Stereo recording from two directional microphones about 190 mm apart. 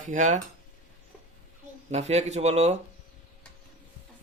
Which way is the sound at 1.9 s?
35° right (ahead or behind).